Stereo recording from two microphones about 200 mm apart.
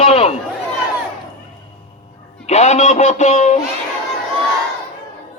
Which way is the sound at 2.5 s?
35° left (ahead or behind).